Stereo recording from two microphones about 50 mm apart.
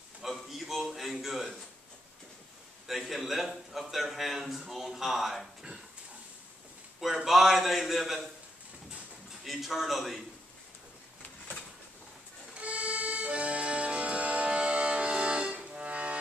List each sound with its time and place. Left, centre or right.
0.2 s a sound: centre
2.9 s a man's voice: centre
7.0 s a man's voice: centre
9.4 s a man's voice: centre
12.5 s accordion: right